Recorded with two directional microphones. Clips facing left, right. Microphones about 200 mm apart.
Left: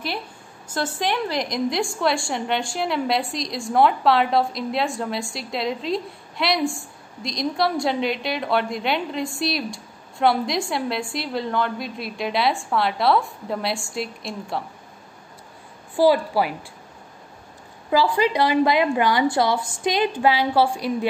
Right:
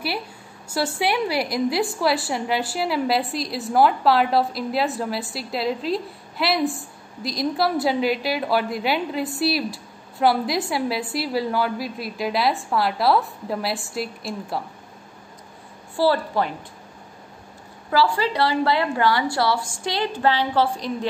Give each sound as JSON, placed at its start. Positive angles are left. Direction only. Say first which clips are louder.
{"t": 0.7, "sound": "a woman's voice", "louder": "right 2 dB", "side_deg": -10}
{"t": 16.0, "sound": "a woman's voice", "louder": "left 3 dB", "side_deg": 10}
{"t": 17.8, "sound": "a woman's voice", "louder": "left 1 dB", "side_deg": 15}